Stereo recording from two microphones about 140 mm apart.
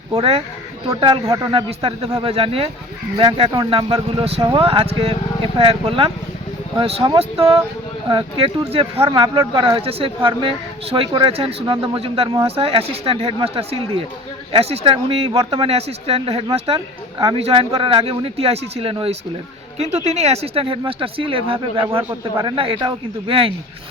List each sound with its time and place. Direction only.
0.2 s speech: 45° right (ahead or behind)
2.2 s speech: 45° right (ahead or behind)